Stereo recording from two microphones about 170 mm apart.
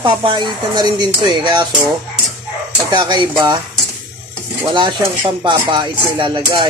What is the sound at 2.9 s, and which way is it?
Speech, 25° right (ahead or behind).